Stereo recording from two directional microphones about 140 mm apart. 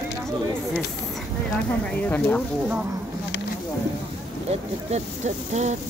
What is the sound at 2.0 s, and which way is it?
Speech, 10° left (ahead or behind).